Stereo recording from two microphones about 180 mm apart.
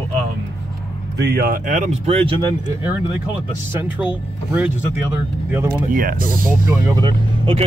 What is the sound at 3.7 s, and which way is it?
Speech, 10° right (ahead or behind).